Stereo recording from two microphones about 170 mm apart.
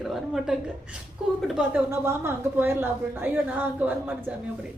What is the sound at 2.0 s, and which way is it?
A woman's voice, 15° right (ahead or behind).